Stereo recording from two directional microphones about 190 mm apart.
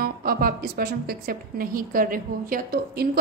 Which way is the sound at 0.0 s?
50° right (ahead or behind).